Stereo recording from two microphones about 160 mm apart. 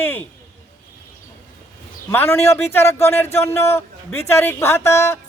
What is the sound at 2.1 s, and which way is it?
Speech, 15° left (ahead or behind).